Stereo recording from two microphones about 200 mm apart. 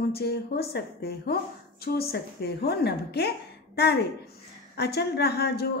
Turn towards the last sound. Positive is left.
turn(degrees=50)  # may be behind; listen again after turning